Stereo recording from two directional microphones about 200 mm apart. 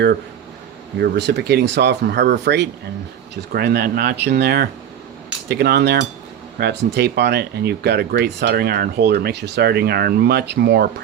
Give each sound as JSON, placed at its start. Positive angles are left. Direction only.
{"t": 0.9, "sound": "speech", "side_deg": -55}